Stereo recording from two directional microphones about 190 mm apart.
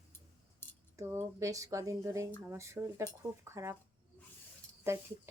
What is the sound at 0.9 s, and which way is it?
Speech, 15° right (ahead or behind).